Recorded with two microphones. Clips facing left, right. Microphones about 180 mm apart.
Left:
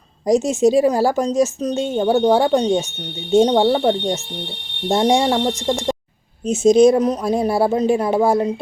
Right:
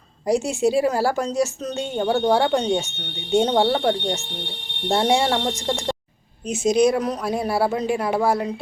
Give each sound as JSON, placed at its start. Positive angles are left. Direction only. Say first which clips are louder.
{"t": 0.3, "sound": "speech", "louder": "left 5 dB", "side_deg": 20}